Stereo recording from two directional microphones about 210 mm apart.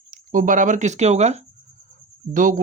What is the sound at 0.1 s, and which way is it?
Speech, 40° right (ahead or behind).